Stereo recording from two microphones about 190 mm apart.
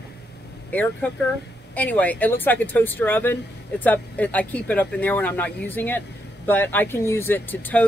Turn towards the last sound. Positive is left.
turn(degrees=10)  # may be behind; listen again after turning